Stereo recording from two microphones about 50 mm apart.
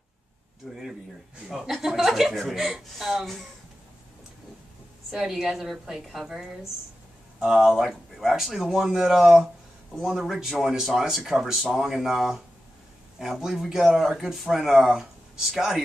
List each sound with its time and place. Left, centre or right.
0.6 s speech: centre
5.1 s speech: centre
7.6 s speech: centre